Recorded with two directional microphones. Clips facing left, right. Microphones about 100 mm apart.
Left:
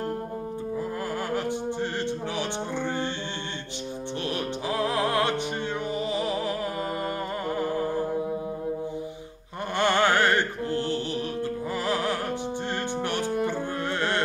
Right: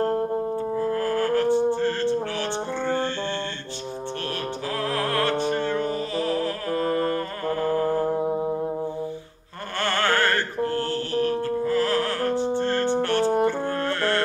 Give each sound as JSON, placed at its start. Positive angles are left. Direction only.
{"t": 0.7, "sound": "music", "side_deg": 15}
{"t": 4.6, "sound": "music", "side_deg": 15}
{"t": 9.8, "sound": "music", "side_deg": 15}